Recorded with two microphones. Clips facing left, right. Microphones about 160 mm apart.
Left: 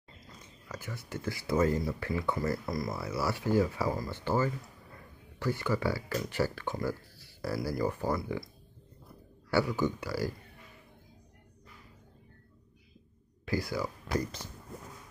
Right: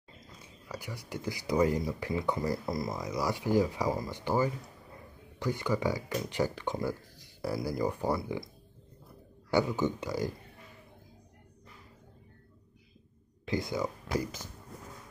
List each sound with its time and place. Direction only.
0.4 s speech: 15° right (ahead or behind)
9.5 s speech: 20° right (ahead or behind)
13.5 s speech: 20° right (ahead or behind)
14.1 s speech: 5° right (ahead or behind)